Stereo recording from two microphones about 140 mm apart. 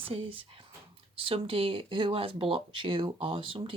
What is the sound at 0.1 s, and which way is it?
Speech, 40° right (ahead or behind).